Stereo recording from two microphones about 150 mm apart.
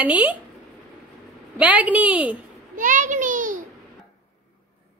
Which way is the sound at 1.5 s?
10° right (ahead or behind).